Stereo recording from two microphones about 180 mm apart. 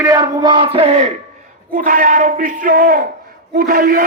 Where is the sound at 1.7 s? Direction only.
50° right (ahead or behind).